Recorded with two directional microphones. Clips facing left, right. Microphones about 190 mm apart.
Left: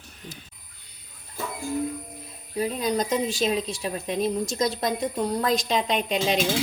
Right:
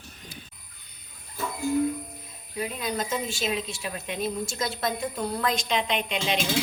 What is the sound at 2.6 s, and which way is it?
Speech, 35° left (ahead or behind).